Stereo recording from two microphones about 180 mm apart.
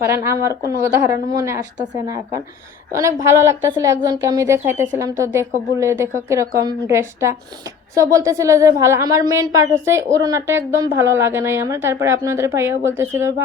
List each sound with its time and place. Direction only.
0.0 s a woman's voice: 15° right (ahead or behind)